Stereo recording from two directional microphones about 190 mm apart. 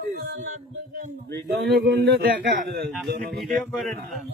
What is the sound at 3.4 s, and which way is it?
Speech, centre (ahead or behind).